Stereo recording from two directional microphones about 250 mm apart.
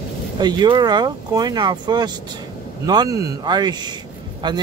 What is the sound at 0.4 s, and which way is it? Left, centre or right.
A man's voice, centre.